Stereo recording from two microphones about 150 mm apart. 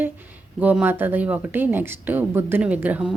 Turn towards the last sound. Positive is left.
turn(degrees=-10)  # may be behind; listen again after turning